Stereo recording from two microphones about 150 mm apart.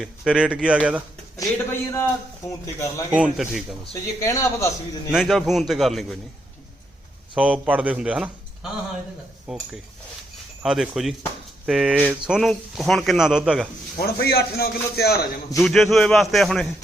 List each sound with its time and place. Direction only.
0.0 s speech: 5° right (ahead or behind)
1.4 s speech: 20° left (ahead or behind)
3.1 s speech: 5° right (ahead or behind)
4.0 s speech: 20° left (ahead or behind)
5.1 s speech: centre (ahead or behind)
7.3 s speech: 10° right (ahead or behind)
9.5 s speech: 5° right (ahead or behind)
14.0 s a man's voice: 90° left
15.5 s speech: centre (ahead or behind)